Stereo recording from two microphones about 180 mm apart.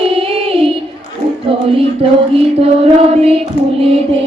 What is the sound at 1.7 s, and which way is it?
Mantra, 35° right (ahead or behind).